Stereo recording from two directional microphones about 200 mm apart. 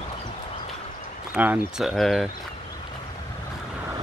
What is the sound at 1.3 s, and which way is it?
Speech, 5° right (ahead or behind).